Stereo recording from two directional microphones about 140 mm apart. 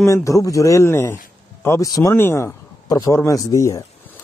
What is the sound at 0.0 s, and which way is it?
Speech, 20° left (ahead or behind).